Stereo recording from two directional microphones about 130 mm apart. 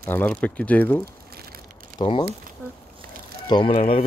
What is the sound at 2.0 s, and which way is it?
Speech, 40° left (ahead or behind).